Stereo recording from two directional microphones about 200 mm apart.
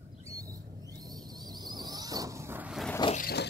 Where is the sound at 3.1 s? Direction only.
50° left (ahead or behind).